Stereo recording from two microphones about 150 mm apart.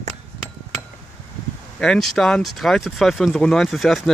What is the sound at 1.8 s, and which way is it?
Speech, 5° left (ahead or behind).